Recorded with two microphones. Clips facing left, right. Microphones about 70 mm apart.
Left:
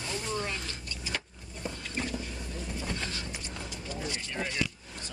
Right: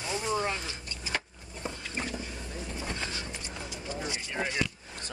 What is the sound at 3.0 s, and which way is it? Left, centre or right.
Vehicle, centre.